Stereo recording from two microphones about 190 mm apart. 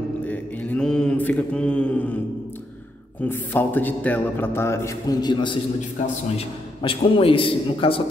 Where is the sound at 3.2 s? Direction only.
10° left (ahead or behind); by 8.0 s 30° left (ahead or behind).